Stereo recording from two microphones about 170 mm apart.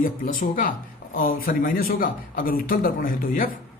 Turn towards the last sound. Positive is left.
turn(degrees=55)  # may be behind; listen again after turning